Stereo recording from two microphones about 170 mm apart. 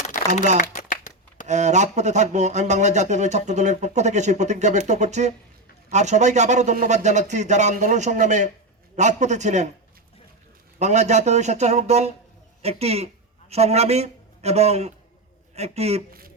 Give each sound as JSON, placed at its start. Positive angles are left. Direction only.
{"t": 0.1, "sound": "a sound", "side_deg": 50}
{"t": 1.5, "sound": "speech", "side_deg": -45}
{"t": 10.8, "sound": "a man's voice", "side_deg": -40}